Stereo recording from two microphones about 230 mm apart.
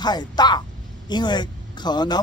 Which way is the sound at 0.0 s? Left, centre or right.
Centre.